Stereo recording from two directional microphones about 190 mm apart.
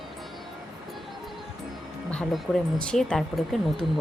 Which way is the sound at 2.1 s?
5° left (ahead or behind).